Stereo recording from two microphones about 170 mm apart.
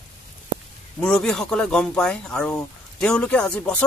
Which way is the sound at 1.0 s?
5° left (ahead or behind).